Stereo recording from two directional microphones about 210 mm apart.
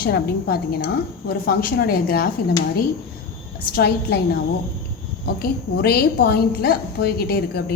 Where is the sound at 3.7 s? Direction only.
45° left (ahead or behind).